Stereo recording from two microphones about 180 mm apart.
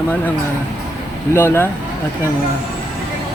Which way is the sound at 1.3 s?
15° left (ahead or behind).